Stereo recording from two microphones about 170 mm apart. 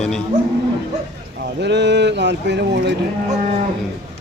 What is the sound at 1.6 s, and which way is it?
Speech, 90° right.